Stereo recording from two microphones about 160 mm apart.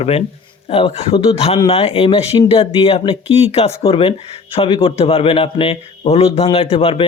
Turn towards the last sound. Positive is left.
turn(degrees=35)  # may be behind; listen again after turning